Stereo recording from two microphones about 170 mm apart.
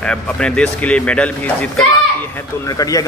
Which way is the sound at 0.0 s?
5° left (ahead or behind).